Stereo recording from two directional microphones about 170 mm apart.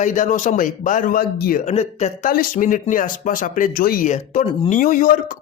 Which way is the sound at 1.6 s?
40° left (ahead or behind).